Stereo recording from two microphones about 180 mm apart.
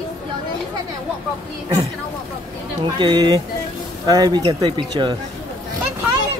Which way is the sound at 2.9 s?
25° right (ahead or behind).